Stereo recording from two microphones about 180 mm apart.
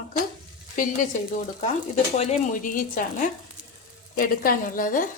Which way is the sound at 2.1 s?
40° left (ahead or behind).